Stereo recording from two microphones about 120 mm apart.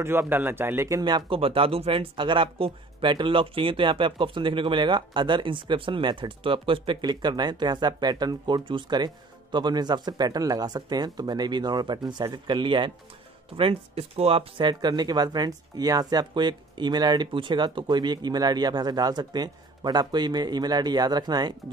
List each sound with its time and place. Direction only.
0.0 s speech: 20° right (ahead or behind)
1.0 s speech: 45° right (ahead or behind)
13.6 s speech: 55° right (ahead or behind)
14.6 s speech: 40° right (ahead or behind)